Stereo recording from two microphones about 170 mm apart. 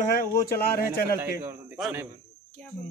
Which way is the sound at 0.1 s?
60° left (ahead or behind).